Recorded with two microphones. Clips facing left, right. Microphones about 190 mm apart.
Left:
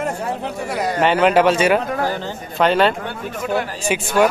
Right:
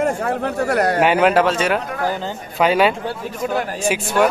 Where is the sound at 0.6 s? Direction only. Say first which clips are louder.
Right 6 dB; 65° right (ahead or behind).